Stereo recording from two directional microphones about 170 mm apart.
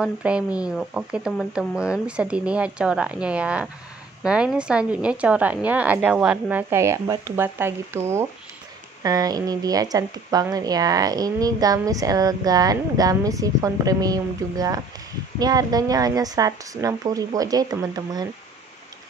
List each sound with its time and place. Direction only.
0.0 s speech: 5° right (ahead or behind); by 18.3 s 20° right (ahead or behind)